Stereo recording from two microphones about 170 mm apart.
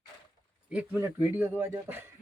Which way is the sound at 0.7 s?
5° right (ahead or behind).